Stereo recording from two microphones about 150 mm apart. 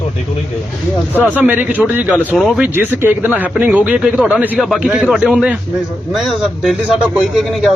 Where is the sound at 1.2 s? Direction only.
10° right (ahead or behind).